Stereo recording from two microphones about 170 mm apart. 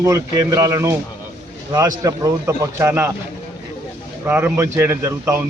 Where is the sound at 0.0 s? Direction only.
20° right (ahead or behind).